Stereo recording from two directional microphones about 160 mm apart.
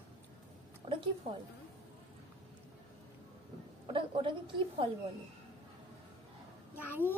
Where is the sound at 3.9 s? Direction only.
30° right (ahead or behind).